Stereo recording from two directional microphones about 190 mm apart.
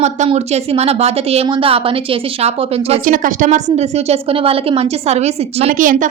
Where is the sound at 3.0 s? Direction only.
45° right (ahead or behind).